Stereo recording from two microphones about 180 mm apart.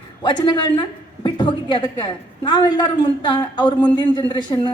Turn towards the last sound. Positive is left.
turn(degrees=25)  # may be behind; listen again after turning